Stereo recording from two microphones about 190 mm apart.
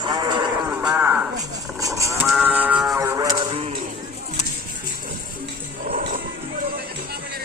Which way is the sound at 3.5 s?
35° right (ahead or behind).